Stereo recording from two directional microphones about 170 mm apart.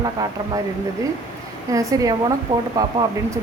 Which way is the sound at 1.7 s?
20° right (ahead or behind).